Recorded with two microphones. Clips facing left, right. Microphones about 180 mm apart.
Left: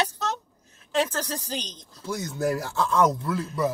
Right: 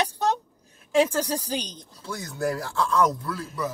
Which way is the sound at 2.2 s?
20° left (ahead or behind).